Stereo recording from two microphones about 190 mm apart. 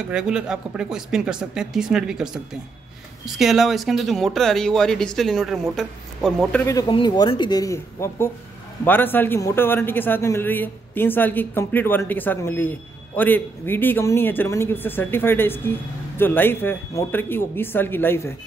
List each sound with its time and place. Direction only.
0.1 s speech: 5° right (ahead or behind)
6.7 s speech: 20° left (ahead or behind)